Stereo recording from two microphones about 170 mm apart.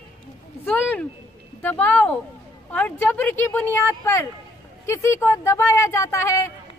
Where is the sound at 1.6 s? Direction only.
10° left (ahead or behind).